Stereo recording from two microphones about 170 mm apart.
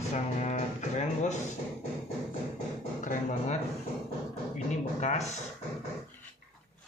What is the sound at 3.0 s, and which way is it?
Speech, 45° left (ahead or behind).